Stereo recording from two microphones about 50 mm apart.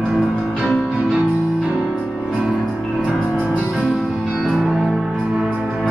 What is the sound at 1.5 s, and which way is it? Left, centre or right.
Music, right.